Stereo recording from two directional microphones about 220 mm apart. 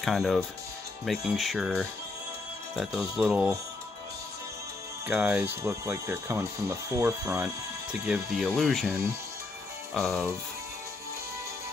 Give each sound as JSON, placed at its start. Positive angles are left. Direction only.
{"t": 0.0, "sound": "speech", "side_deg": 0}
{"t": 5.0, "sound": "speech", "side_deg": -10}
{"t": 9.9, "sound": "speech", "side_deg": 5}